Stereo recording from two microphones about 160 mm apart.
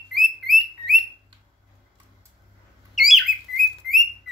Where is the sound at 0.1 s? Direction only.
Centre (ahead or behind).